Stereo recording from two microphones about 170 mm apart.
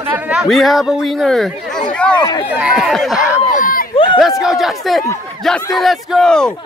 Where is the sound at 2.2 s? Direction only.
25° left (ahead or behind).